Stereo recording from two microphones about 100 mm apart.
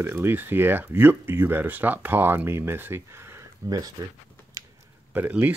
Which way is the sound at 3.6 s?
40° right (ahead or behind).